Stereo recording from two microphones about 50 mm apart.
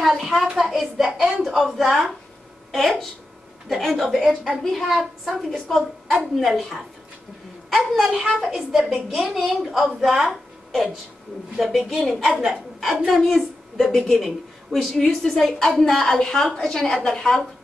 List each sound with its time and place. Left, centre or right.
0.0 s a woman's voice: centre
1.0 s a woman's voice: centre
1.4 s a woman's voice: centre
4.2 s a woman's voice: centre
5.5 s a woman's voice: centre